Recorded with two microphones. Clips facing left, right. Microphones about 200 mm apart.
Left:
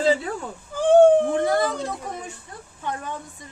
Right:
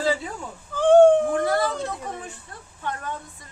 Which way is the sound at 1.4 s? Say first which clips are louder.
Left 1 dB; 20° left (ahead or behind).